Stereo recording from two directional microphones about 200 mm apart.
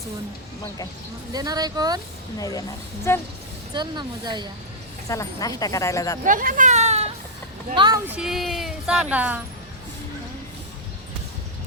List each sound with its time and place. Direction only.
1.3 s speech: 20° right (ahead or behind)
2.4 s speech: 15° left (ahead or behind)
3.8 s speech: 20° right (ahead or behind)
5.0 s speech: 15° left (ahead or behind)
6.2 s speech: 40° right (ahead or behind)
7.8 s speech: 20° right (ahead or behind)
8.0 s speech: 5° right (ahead or behind)